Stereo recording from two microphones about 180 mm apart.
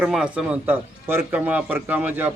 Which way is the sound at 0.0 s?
5° right (ahead or behind).